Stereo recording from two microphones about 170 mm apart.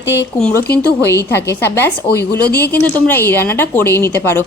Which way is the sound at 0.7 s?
15° left (ahead or behind).